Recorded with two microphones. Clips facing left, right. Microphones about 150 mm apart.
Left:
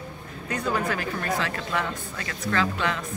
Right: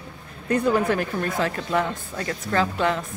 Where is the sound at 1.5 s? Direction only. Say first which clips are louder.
Right 5 dB; 30° right (ahead or behind).